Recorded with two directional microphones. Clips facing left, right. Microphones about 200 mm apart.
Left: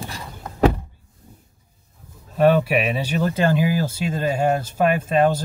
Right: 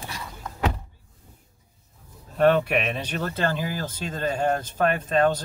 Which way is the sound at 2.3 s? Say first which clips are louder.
Left 3 dB; 5° left (ahead or behind).